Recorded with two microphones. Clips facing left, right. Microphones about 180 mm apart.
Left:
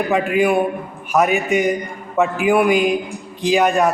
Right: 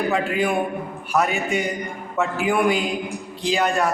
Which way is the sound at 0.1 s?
15° left (ahead or behind).